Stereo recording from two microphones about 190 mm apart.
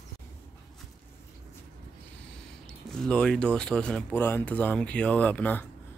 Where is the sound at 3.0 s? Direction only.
5° left (ahead or behind).